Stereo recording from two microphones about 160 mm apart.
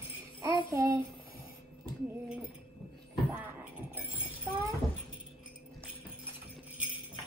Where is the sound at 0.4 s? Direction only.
20° right (ahead or behind).